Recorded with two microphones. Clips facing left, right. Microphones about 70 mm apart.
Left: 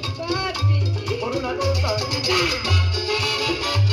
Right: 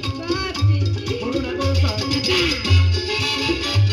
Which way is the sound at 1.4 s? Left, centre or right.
Left.